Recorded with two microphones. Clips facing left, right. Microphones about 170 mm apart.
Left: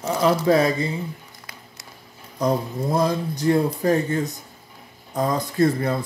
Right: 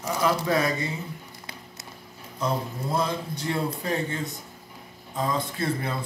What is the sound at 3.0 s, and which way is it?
Speech, 40° left (ahead or behind).